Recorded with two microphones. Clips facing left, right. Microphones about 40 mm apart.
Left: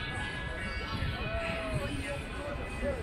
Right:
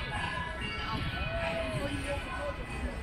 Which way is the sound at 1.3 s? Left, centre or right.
Centre.